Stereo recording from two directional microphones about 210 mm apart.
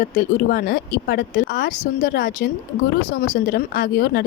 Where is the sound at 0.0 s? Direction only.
45° left (ahead or behind).